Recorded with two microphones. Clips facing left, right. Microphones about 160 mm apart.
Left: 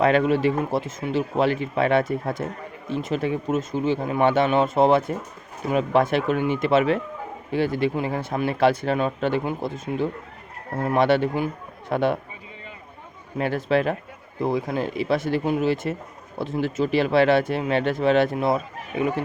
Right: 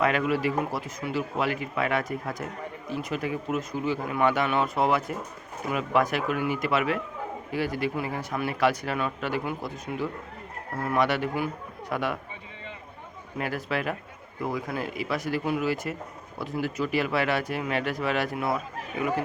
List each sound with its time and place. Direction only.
0.0 s speech: 30° left (ahead or behind)
13.4 s speech: 25° left (ahead or behind)